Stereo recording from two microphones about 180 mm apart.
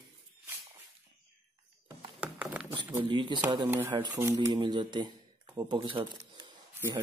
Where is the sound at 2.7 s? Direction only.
25° right (ahead or behind).